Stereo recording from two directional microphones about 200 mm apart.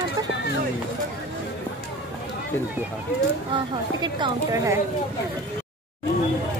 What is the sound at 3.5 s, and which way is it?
A woman's voice, 25° right (ahead or behind).